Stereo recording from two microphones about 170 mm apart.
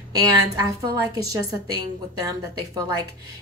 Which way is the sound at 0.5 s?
20° right (ahead or behind).